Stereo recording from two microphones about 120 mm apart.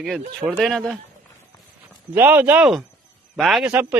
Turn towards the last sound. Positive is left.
turn(degrees=-15)  # may be behind; listen again after turning